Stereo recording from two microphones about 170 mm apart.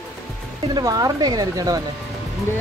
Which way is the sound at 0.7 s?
20° right (ahead or behind).